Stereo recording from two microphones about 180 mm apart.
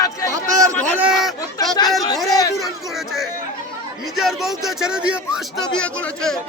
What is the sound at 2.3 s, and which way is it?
Speech, 20° left (ahead or behind).